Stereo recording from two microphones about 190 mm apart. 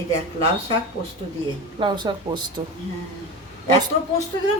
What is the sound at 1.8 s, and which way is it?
Speech, 25° right (ahead or behind).